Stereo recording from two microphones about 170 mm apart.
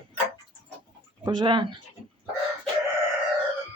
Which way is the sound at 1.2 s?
25° right (ahead or behind).